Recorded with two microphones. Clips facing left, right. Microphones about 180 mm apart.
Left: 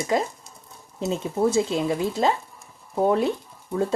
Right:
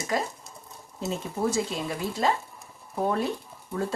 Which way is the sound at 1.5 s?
25° left (ahead or behind).